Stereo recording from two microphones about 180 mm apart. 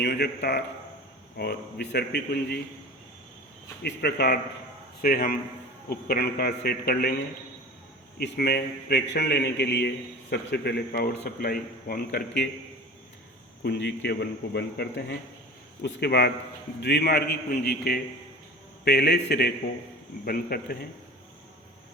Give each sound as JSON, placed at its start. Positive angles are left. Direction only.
{"t": 0.0, "sound": "a man's voice", "side_deg": 65}
{"t": 3.8, "sound": "a man's voice", "side_deg": 65}
{"t": 8.2, "sound": "a man's voice", "side_deg": 65}
{"t": 13.6, "sound": "a man's voice", "side_deg": 70}
{"t": 20.2, "sound": "a man's voice", "side_deg": 55}